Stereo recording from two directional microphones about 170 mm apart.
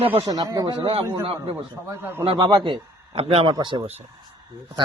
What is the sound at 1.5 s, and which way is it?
Speech, 15° right (ahead or behind).